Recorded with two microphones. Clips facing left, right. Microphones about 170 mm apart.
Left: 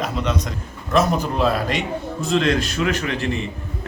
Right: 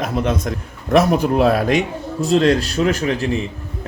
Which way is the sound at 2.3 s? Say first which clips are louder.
Right 4 dB; 40° right (ahead or behind).